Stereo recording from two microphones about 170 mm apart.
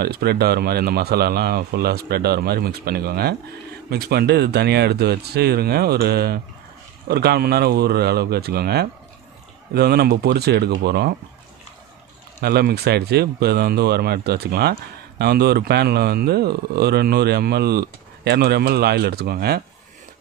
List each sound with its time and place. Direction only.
0.0 s speech: 70° right (ahead or behind)
12.4 s speech: 70° right (ahead or behind)